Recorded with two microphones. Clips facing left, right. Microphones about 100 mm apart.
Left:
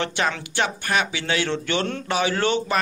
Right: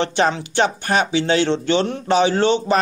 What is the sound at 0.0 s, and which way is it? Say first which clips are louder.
Speech: right 6 dB; 30° right (ahead or behind).